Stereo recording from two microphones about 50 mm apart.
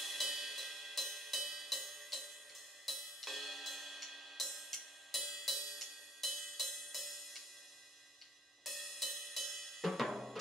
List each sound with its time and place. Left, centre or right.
0.0 s music: centre
8.6 s cymbal: centre